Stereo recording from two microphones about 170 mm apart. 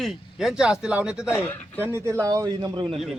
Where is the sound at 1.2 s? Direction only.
15° left (ahead or behind).